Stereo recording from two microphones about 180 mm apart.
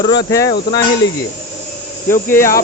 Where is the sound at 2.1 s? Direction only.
15° left (ahead or behind).